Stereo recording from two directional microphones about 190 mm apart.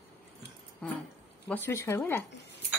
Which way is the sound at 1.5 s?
15° left (ahead or behind).